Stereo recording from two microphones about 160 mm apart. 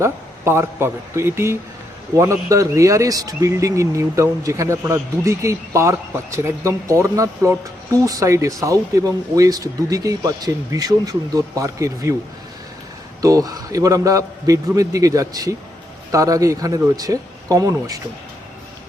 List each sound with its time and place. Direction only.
0.0 s speech: 15° right (ahead or behind)
13.2 s speech: 20° right (ahead or behind)